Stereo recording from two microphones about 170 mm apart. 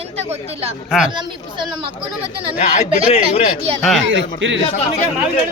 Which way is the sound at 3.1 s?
40° left (ahead or behind).